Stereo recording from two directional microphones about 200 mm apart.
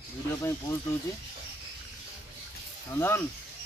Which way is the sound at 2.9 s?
10° left (ahead or behind).